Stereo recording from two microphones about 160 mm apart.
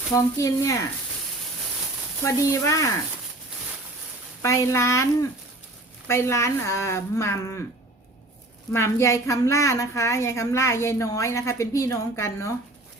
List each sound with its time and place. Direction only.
0.1 s speech: 20° left (ahead or behind)
2.2 s speech: 20° left (ahead or behind)
4.4 s a woman's voice: 15° left (ahead or behind)
6.1 s a woman's voice: 15° left (ahead or behind)
8.7 s a woman's voice: 15° left (ahead or behind)